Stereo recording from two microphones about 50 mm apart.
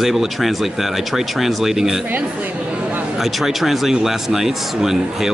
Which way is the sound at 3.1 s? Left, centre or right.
Centre.